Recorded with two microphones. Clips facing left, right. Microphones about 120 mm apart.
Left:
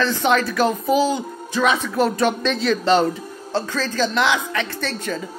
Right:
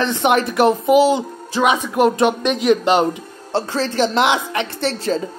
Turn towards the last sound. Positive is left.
turn(degrees=-30)  # may be behind; listen again after turning